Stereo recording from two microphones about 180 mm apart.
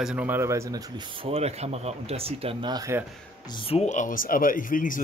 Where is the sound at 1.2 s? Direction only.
35° right (ahead or behind).